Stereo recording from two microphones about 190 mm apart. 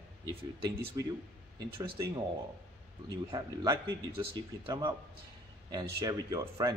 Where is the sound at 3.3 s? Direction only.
20° right (ahead or behind).